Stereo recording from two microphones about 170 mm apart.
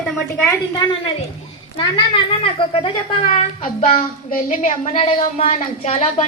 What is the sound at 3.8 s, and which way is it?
A woman's voice, 55° left (ahead or behind).